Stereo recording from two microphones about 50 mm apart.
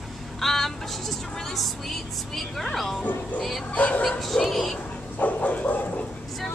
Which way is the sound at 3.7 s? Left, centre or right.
Left.